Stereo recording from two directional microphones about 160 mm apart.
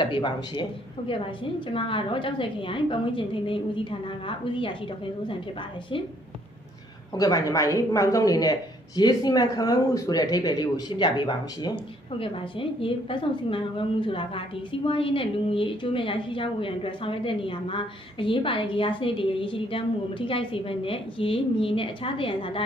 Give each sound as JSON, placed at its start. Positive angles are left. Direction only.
{"t": 0.0, "sound": "speech", "side_deg": 30}
{"t": 7.2, "sound": "speech", "side_deg": 25}